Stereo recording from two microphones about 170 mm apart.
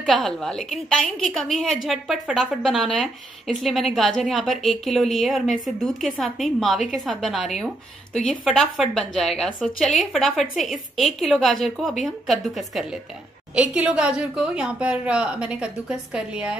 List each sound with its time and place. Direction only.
0.0 s speech: centre (ahead or behind)